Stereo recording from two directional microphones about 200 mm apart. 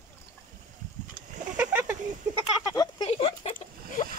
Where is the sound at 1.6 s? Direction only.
10° right (ahead or behind).